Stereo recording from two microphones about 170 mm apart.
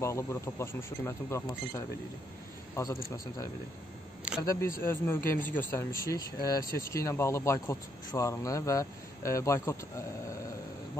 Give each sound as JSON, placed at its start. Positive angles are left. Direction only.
{"t": 0.0, "sound": "speech", "side_deg": 15}
{"t": 4.4, "sound": "speech", "side_deg": 20}